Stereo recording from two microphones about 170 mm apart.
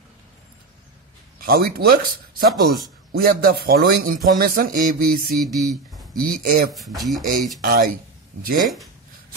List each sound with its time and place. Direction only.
1.4 s a man's voice: 60° right (ahead or behind)
2.5 s speech: centre (ahead or behind)
3.1 s a man's voice: 60° right (ahead or behind)
5.4 s speech: centre (ahead or behind)
6.2 s a man's voice: 55° right (ahead or behind)
6.7 s speech: centre (ahead or behind)
7.6 s speech: 60° right (ahead or behind)